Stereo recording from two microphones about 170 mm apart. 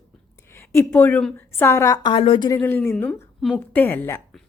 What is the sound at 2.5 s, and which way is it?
A woman's voice, 10° left (ahead or behind).